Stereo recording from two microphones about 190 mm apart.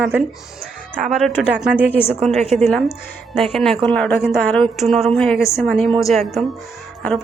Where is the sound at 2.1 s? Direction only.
35° right (ahead or behind).